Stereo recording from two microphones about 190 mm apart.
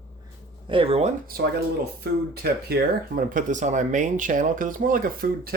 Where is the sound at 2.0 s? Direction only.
55° right (ahead or behind).